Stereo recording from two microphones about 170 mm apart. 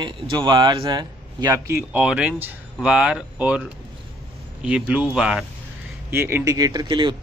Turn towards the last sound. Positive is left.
turn(degrees=-25)  # may be behind; listen again after turning